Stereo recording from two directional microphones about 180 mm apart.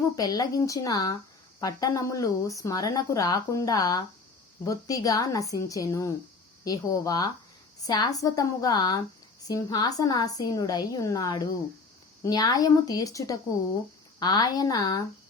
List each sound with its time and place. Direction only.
0.2 s speech: 20° left (ahead or behind)